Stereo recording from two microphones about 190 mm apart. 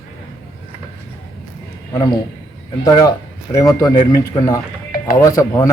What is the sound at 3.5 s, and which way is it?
A man's voice, 15° left (ahead or behind).